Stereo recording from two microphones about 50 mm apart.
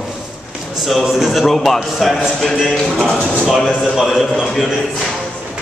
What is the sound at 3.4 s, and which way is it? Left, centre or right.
Speech, centre.